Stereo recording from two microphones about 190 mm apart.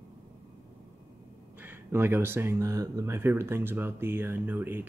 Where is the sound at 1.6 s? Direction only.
10° right (ahead or behind).